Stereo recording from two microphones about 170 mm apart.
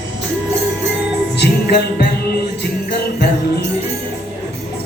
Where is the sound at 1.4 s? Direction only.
75° left (ahead or behind).